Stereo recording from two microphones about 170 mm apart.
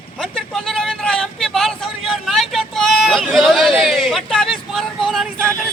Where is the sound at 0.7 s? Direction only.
5° left (ahead or behind).